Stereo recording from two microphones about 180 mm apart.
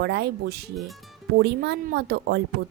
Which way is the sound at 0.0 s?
65° right (ahead or behind).